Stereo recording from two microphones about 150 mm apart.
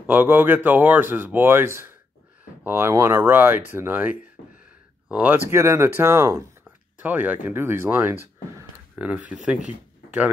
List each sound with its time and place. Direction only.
0.0 s speech: 15° right (ahead or behind)